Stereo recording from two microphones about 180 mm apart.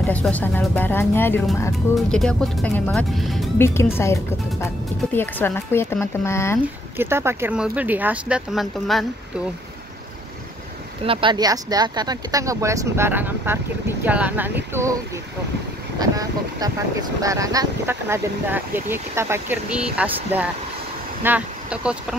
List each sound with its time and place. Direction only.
0.0 s speech: 10° left (ahead or behind)
3.5 s speech: 15° left (ahead or behind)
7.0 s speech: 15° right (ahead or behind)
11.1 s speech: 30° right (ahead or behind)
16.0 s speech: 20° right (ahead or behind)